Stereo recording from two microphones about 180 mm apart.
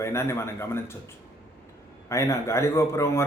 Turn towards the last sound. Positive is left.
turn(degrees=15)  # may be behind; listen again after turning